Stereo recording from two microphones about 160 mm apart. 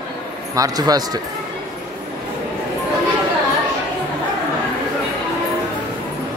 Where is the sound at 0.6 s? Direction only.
25° right (ahead or behind).